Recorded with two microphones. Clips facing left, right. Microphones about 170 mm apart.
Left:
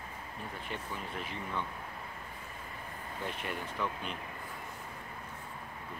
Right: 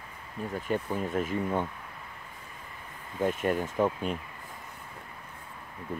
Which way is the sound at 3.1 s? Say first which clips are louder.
Right 12 dB; 45° right (ahead or behind).